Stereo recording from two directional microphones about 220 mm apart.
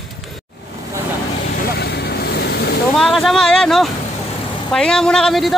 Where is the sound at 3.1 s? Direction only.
Centre (ahead or behind).